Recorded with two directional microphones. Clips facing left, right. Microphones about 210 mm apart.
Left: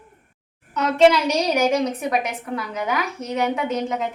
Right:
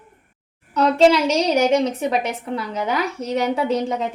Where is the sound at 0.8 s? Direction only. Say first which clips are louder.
Right 1 dB; 30° right (ahead or behind).